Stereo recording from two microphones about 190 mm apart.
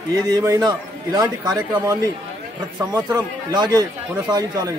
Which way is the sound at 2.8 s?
20° right (ahead or behind).